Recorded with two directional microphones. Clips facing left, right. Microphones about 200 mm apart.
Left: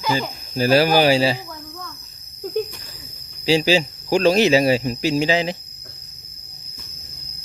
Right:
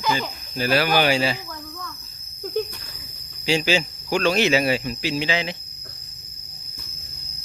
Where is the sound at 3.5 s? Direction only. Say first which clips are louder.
Left 4 dB; 35° left (ahead or behind).